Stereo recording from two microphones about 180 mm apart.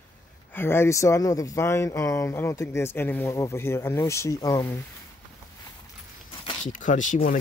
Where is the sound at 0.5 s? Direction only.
10° left (ahead or behind).